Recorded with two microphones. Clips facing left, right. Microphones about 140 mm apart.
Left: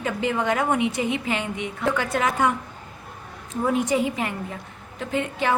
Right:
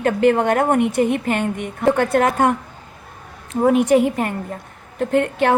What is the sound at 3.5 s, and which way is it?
A woman's voice, 60° right (ahead or behind).